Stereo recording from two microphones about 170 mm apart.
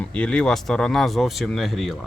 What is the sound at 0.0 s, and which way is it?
Speech, 5° left (ahead or behind).